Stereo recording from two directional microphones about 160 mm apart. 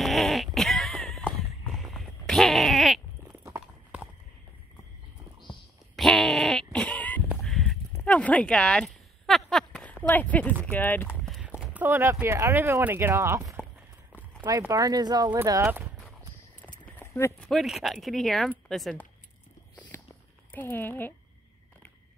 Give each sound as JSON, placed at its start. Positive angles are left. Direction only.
{"t": 0.0, "sound": "a sound", "side_deg": 0}
{"t": 3.4, "sound": "clip-clop", "side_deg": -10}
{"t": 5.5, "sound": "a sound", "side_deg": 0}
{"t": 7.2, "sound": "honk", "side_deg": 0}
{"t": 8.0, "sound": "a sound", "side_deg": 10}
{"t": 10.0, "sound": "speech", "side_deg": 10}
{"t": 11.2, "sound": "clip-clop", "side_deg": 0}
{"t": 11.6, "sound": "speech", "side_deg": -10}
{"t": 14.7, "sound": "speech", "side_deg": -25}
{"t": 16.8, "sound": "clip-clop", "side_deg": 15}
{"t": 17.5, "sound": "speech", "side_deg": 0}
{"t": 19.9, "sound": "a sound", "side_deg": 15}
{"t": 20.5, "sound": "speech", "side_deg": 10}